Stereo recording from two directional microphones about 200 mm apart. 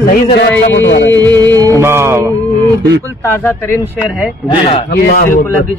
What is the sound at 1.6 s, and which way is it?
Music, 15° right (ahead or behind).